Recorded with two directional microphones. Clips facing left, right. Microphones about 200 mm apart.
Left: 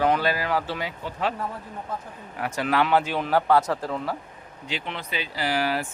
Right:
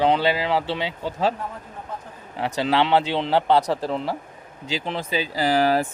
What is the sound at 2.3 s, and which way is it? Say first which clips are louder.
Speech: right 3 dB; 25° right (ahead or behind).